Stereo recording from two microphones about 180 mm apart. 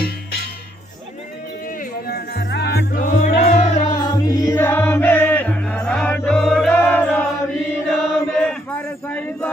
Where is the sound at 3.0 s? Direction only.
40° left (ahead or behind).